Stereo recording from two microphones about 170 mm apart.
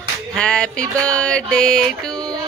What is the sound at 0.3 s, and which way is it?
Music, 5° left (ahead or behind).